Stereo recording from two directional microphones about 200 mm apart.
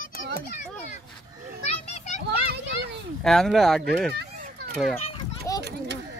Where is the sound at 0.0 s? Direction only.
45° left (ahead or behind).